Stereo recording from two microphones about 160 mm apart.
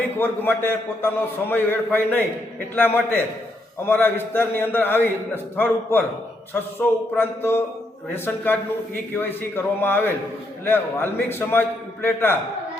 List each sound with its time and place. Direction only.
0.0 s a man's voice: 15° left (ahead or behind)
9.8 s a man's voice: 10° left (ahead or behind)